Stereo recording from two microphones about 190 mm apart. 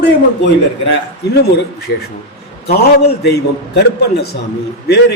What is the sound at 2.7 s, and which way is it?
A man's voice, 60° left (ahead or behind).